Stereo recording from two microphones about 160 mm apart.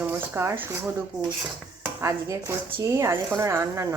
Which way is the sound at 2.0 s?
20° right (ahead or behind).